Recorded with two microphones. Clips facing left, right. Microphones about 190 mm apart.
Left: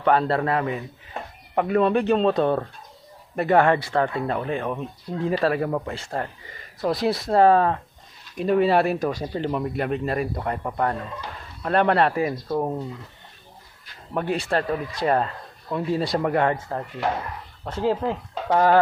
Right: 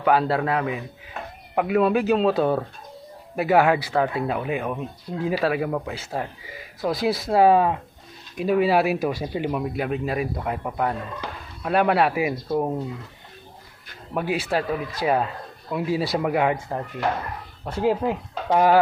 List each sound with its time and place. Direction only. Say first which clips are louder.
0.0 s speech: even; 5° right (ahead or behind)
1.2 s a sound: left 1 dB; 30° left (ahead or behind)
1.5 s speech: even; 5° right (ahead or behind)
14.1 s speech: even; centre (ahead or behind)